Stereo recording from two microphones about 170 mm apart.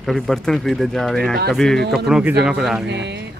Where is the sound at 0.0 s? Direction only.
Centre (ahead or behind).